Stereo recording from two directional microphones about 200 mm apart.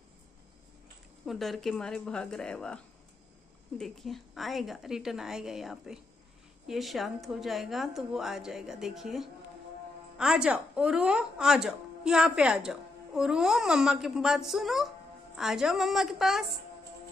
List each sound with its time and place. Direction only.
1.2 s speech: centre (ahead or behind)